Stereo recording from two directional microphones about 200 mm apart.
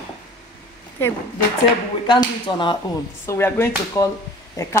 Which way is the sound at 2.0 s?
25° left (ahead or behind).